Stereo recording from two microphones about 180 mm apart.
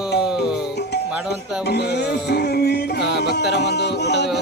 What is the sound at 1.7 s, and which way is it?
Music, 65° left (ahead or behind).